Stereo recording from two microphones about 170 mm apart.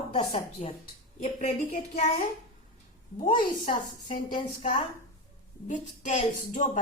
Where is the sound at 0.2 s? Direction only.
35° left (ahead or behind).